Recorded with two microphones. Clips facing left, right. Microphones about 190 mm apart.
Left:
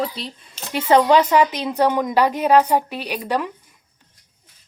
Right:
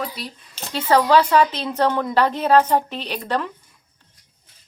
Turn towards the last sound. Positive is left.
turn(degrees=10)  # may be behind; listen again after turning